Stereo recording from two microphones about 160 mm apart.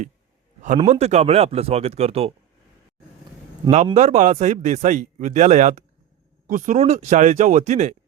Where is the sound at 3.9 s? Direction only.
45° right (ahead or behind).